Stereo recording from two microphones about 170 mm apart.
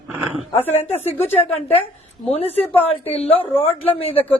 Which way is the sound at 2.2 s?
35° left (ahead or behind).